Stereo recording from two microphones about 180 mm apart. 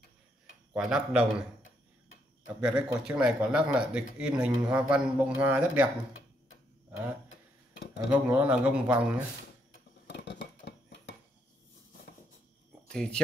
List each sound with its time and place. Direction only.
0.7 s speech: 5° right (ahead or behind)
2.6 s speech: 5° right (ahead or behind)
8.1 s a man's voice: 10° right (ahead or behind)
10.0 s cutlery: 75° left (ahead or behind)
12.8 s speech: 5° left (ahead or behind)